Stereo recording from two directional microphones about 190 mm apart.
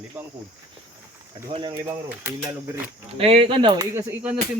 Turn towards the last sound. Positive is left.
turn(degrees=-10)  # may be behind; listen again after turning